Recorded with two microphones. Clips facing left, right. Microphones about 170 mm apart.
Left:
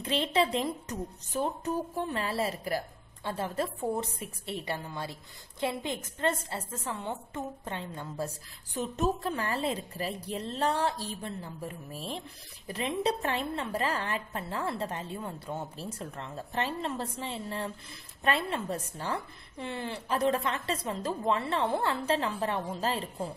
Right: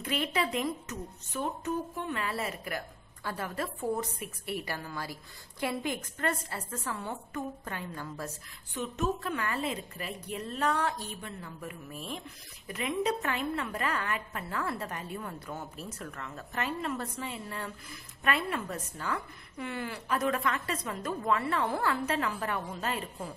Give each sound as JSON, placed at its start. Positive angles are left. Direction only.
{"t": 0.0, "sound": "a woman's voice", "side_deg": 30}